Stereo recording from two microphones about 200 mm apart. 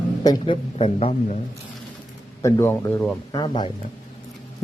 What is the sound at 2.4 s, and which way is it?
Speech, 10° left (ahead or behind).